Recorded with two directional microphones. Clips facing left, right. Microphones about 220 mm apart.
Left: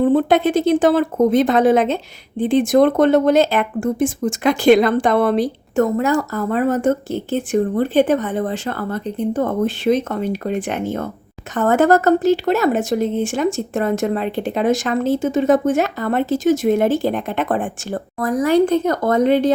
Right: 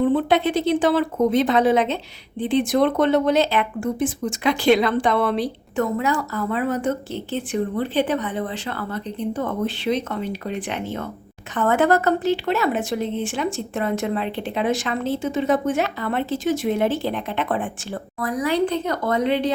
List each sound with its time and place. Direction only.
0.0 s speech: 45° left (ahead or behind)